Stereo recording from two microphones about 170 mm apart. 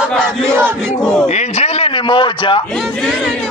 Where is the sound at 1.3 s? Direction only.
40° left (ahead or behind).